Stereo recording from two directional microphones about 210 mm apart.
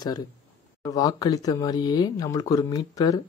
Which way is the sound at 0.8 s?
15° left (ahead or behind).